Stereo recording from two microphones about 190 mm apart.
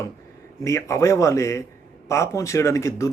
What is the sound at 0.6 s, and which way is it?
Speech, 15° left (ahead or behind).